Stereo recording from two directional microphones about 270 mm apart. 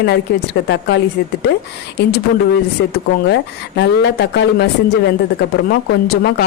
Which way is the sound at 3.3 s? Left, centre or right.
Left.